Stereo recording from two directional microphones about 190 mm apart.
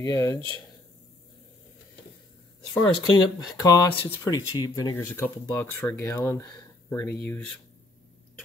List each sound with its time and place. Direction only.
0.0 s speech: 20° left (ahead or behind)
2.7 s speech: 15° left (ahead or behind)